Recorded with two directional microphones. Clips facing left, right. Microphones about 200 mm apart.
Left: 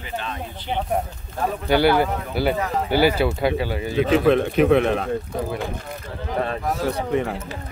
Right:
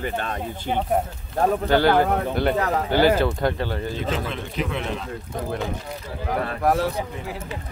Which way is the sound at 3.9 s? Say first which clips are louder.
Left 10 dB; 65° left (ahead or behind).